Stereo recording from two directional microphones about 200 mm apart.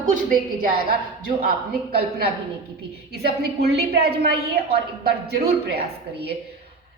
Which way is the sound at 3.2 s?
55° right (ahead or behind).